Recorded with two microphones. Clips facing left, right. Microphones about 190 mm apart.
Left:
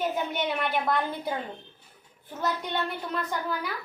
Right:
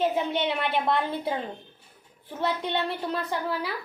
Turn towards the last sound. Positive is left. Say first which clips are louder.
# right 2 dB
turn(degrees=-30)  # may be behind; listen again after turning